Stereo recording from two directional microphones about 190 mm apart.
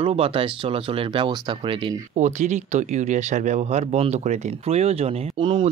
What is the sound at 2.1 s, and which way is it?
Speech, 40° right (ahead or behind).